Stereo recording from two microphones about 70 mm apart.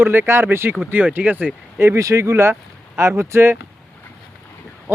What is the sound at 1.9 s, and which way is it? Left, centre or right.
Speech, right.